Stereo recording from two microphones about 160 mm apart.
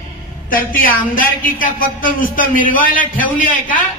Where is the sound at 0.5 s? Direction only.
60° left (ahead or behind).